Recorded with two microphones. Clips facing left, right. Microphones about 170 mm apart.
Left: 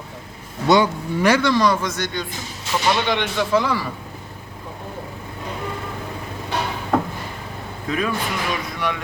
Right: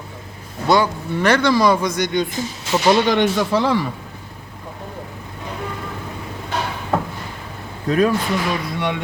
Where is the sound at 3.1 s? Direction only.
45° right (ahead or behind).